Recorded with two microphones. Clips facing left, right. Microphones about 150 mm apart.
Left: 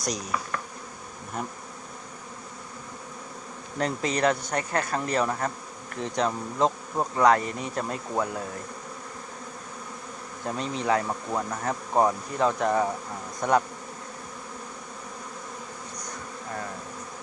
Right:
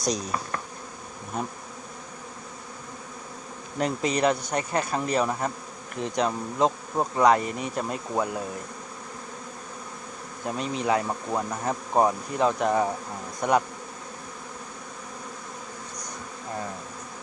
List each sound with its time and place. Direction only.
0.0 s insect: 25° right (ahead or behind)
3.8 s bee: 15° right (ahead or behind)
10.4 s bee: 15° right (ahead or behind)